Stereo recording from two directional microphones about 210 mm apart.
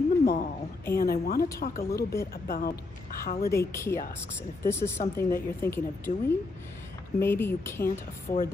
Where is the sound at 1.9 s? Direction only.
15° left (ahead or behind).